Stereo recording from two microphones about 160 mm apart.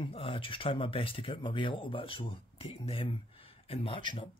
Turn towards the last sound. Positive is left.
turn(degrees=30)  # may be behind; listen again after turning